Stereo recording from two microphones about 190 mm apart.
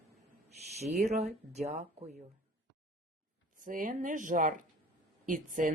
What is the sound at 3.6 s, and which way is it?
A woman's voice, 45° right (ahead or behind).